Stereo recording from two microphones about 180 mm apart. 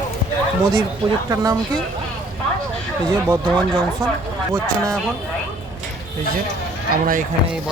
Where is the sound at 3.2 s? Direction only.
15° right (ahead or behind).